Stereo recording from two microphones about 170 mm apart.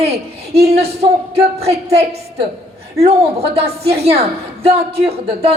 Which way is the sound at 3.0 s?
35° right (ahead or behind).